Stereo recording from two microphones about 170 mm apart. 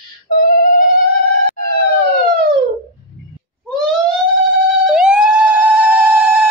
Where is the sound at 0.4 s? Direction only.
55° left (ahead or behind).